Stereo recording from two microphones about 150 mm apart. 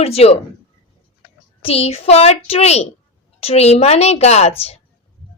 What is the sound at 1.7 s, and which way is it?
A woman's voice, 40° left (ahead or behind).